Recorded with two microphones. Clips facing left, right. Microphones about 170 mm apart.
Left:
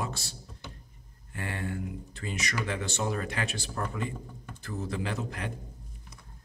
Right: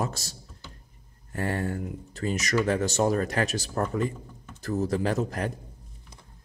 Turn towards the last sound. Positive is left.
turn(degrees=-40)  # may be behind; listen again after turning